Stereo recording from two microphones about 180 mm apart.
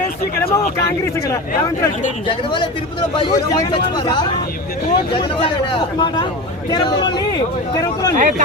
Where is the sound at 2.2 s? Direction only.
25° left (ahead or behind).